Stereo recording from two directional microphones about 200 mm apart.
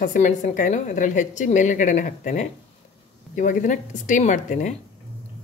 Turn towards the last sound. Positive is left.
turn(degrees=40)  # may be behind; listen again after turning